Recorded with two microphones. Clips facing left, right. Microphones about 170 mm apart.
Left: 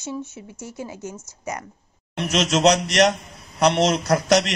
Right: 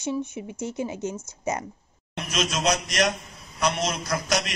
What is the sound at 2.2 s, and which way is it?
A man's voice, 75° left (ahead or behind).